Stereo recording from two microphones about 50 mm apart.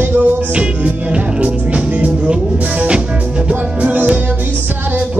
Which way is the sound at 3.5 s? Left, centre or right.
Right.